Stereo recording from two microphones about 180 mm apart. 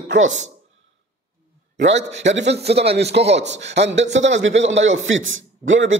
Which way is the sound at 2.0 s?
85° right.